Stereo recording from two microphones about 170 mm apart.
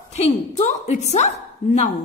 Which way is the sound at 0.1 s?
40° left (ahead or behind).